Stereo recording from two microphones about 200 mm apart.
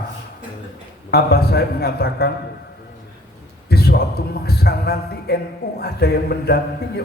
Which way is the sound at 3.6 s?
50° left (ahead or behind).